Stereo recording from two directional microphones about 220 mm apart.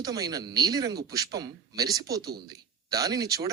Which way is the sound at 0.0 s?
15° right (ahead or behind).